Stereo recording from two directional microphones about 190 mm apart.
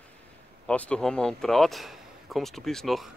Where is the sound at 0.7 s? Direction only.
5° left (ahead or behind).